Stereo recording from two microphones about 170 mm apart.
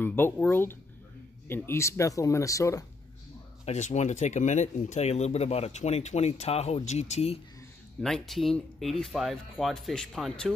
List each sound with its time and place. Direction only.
0.0 s speech: 10° left (ahead or behind)
3.6 s speech: 40° left (ahead or behind)
8.0 s speech: centre (ahead or behind)